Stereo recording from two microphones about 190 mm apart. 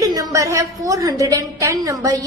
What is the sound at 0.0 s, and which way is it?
A woman's voice, 20° right (ahead or behind).